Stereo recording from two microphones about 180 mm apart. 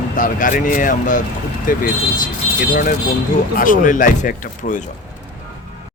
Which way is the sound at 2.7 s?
50° left (ahead or behind).